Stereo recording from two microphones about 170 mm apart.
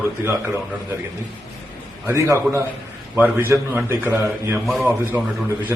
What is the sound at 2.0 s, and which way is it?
A man's voice, 15° right (ahead or behind).